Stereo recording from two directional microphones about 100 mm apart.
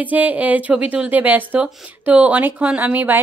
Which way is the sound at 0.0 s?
15° right (ahead or behind).